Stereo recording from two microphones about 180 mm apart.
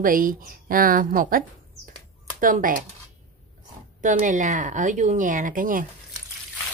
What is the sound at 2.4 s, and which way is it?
Speech, 50° right (ahead or behind).